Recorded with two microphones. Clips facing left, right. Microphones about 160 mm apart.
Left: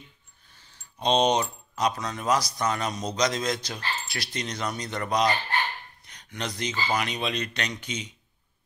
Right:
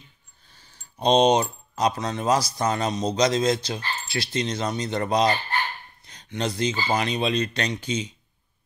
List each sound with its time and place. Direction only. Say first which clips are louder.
0.9 s speech: right 4 dB; 35° right (ahead or behind)